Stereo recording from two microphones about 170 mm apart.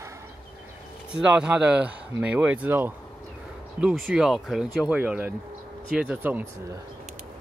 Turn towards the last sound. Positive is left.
turn(degrees=-10)  # may be behind; listen again after turning